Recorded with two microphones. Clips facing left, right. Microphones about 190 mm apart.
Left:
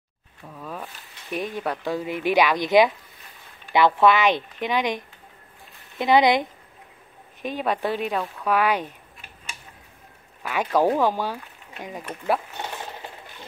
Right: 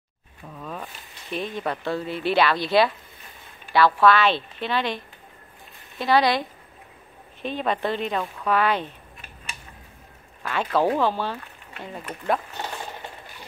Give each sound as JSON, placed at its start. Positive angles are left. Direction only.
{"t": 0.6, "sound": "a sound", "side_deg": 5}
{"t": 1.3, "sound": "speech", "side_deg": 10}
{"t": 7.4, "sound": "speech", "side_deg": 10}
{"t": 10.4, "sound": "speech", "side_deg": 10}